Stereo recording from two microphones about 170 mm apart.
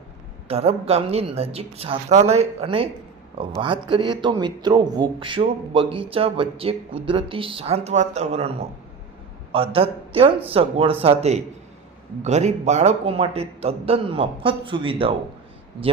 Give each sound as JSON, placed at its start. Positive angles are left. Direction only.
{"t": 0.4, "sound": "a man's voice", "side_deg": -35}